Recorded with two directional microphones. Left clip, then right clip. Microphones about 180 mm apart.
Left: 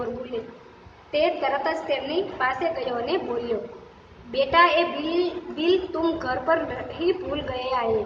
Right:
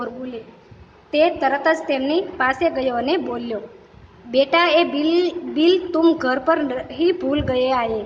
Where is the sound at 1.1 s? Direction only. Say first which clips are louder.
Right 5 dB; 65° right (ahead or behind).